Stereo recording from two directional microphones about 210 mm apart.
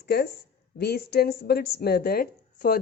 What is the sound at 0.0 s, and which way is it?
A woman's voice, 50° left (ahead or behind).